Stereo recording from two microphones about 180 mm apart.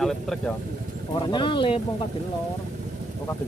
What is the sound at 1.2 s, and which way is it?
Speech, 25° left (ahead or behind).